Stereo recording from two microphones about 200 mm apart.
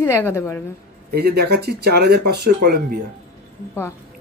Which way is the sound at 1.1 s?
55° right (ahead or behind).